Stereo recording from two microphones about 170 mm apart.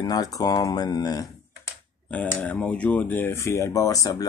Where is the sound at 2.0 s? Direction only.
10° left (ahead or behind).